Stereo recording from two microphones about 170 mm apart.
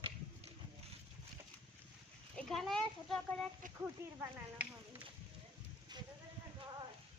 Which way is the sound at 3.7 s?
10° right (ahead or behind).